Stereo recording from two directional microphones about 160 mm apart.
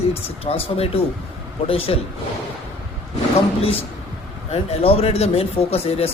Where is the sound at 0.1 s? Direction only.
40° left (ahead or behind).